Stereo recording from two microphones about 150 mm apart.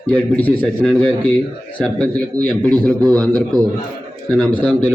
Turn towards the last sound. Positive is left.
turn(degrees=10)  # may be behind; listen again after turning